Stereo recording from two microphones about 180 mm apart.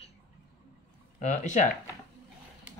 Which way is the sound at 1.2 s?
40° left (ahead or behind).